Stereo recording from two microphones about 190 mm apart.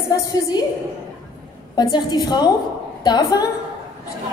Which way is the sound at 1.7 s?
20° left (ahead or behind).